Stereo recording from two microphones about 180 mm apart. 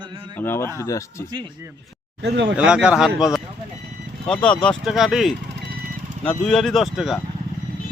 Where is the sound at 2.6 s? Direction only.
5° right (ahead or behind).